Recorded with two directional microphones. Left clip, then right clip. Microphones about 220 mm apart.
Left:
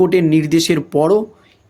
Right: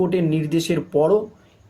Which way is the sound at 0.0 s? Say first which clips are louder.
Left 8 dB; 50° left (ahead or behind).